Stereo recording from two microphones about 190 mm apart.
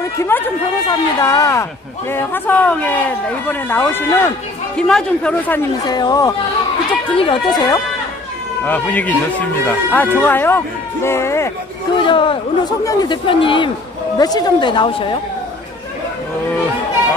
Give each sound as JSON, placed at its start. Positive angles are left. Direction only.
{"t": 0.2, "sound": "a man's voice", "side_deg": 15}
{"t": 5.9, "sound": "speech", "side_deg": 20}
{"t": 8.6, "sound": "speech", "side_deg": 10}
{"t": 12.0, "sound": "speech", "side_deg": 25}